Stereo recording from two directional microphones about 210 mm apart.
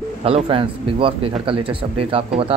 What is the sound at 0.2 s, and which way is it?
A man's voice, 25° right (ahead or behind).